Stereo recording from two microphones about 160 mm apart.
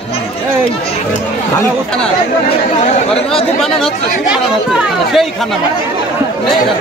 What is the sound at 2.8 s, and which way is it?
Speech, 45° left (ahead or behind).